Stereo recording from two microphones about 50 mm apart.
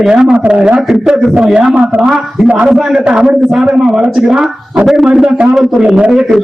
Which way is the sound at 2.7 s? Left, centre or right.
Centre.